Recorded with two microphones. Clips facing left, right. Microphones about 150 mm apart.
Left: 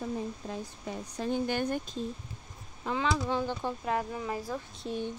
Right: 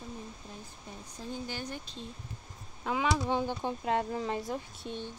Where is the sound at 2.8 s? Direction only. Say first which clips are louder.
Even; 10° right (ahead or behind); by 4.4 s 25° right (ahead or behind).